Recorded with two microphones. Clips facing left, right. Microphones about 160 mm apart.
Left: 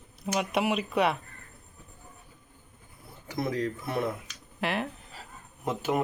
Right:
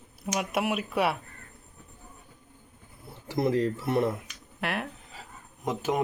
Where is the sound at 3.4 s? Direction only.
25° right (ahead or behind).